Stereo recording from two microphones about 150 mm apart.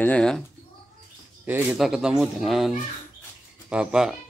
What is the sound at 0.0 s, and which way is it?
Speech, 5° left (ahead or behind).